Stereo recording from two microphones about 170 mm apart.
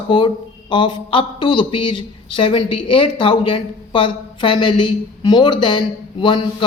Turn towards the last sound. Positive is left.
turn(degrees=30)  # may be behind; listen again after turning